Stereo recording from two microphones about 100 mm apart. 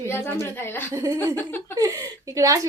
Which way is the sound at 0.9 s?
35° right (ahead or behind).